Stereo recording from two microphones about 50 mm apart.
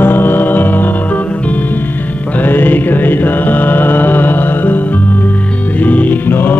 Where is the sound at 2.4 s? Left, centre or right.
Left.